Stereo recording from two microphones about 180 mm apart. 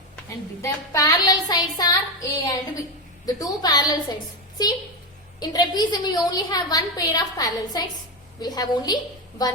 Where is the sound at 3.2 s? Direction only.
20° left (ahead or behind).